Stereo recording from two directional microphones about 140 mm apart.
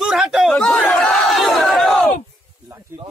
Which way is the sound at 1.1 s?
Centre (ahead or behind).